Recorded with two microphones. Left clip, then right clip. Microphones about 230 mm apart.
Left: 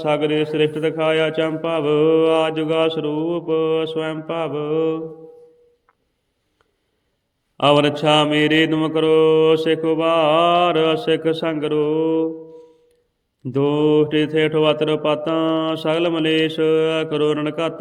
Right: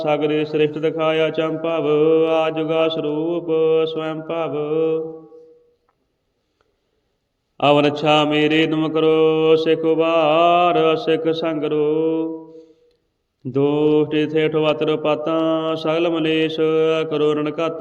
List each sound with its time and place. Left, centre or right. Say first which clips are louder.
0.0 s mantra: even; left
7.5 s mantra: even; left